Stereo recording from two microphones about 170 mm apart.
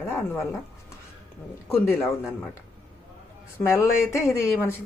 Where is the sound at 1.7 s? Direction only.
15° left (ahead or behind).